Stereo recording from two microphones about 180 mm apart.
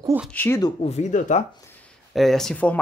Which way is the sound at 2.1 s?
Centre (ahead or behind).